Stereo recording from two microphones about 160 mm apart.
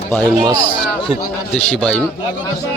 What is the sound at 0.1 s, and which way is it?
Speech, 10° left (ahead or behind).